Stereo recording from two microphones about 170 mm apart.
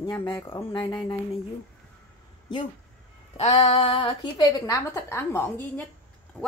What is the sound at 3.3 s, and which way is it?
A woman's voice, 35° left (ahead or behind).